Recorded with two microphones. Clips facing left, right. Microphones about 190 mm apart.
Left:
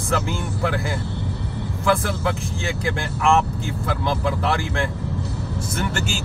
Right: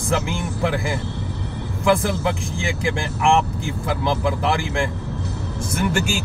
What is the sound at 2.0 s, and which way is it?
Speech, 15° right (ahead or behind).